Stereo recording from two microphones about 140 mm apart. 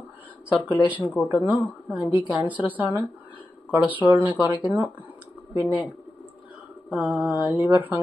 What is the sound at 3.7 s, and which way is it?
Speech, 10° right (ahead or behind).